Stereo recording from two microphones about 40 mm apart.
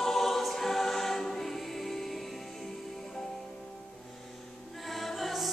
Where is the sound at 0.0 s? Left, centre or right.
Centre.